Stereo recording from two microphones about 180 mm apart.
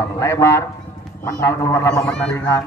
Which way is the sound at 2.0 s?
5° left (ahead or behind).